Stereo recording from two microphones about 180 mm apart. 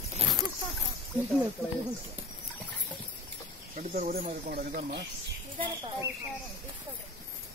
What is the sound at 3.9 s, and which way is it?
Speech, 45° right (ahead or behind).